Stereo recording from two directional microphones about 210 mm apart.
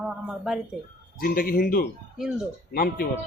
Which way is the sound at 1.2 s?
45° left (ahead or behind).